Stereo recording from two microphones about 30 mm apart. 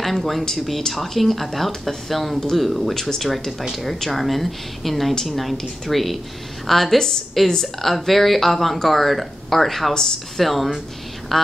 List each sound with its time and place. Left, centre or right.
0.0 s speech: centre